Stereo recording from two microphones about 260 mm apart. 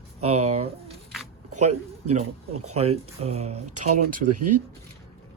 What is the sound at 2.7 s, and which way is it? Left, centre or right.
Speech, right.